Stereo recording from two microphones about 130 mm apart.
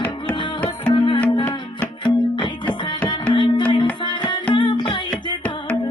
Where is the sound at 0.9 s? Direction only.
40° left (ahead or behind).